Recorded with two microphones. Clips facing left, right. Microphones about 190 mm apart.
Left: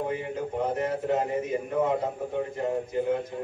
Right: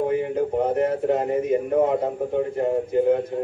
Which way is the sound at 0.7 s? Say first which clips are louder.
Right 5 dB; 60° right (ahead or behind).